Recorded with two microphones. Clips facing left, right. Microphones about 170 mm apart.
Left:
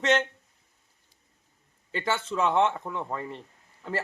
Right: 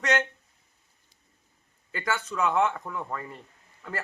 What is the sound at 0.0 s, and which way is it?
Speech, 25° left (ahead or behind).